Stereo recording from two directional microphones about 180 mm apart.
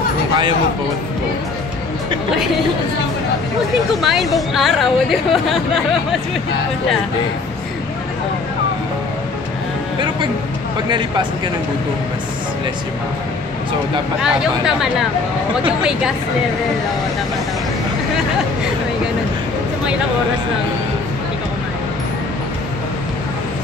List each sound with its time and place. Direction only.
4.0 s speech: centre (ahead or behind)
10.9 s speech: 25° right (ahead or behind)
14.2 s speech: 5° right (ahead or behind)